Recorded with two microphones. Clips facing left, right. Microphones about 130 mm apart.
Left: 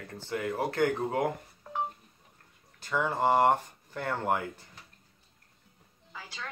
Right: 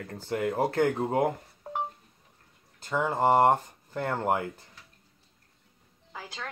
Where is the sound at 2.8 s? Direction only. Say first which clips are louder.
Right 2 dB; 20° right (ahead or behind).